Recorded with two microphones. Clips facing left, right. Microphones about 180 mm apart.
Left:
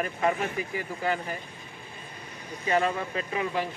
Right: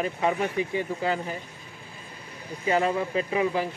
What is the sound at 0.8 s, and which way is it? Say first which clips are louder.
Speech: right 3 dB; 25° right (ahead or behind).